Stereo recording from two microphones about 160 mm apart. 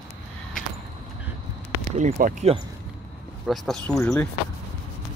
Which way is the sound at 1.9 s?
50° right (ahead or behind).